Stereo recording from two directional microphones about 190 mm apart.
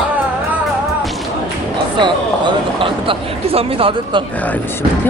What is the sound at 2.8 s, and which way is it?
Speech, 25° right (ahead or behind).